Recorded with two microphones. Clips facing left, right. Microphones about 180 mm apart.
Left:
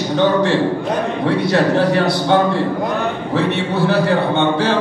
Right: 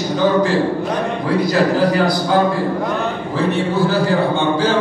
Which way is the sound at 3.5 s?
65° left (ahead or behind).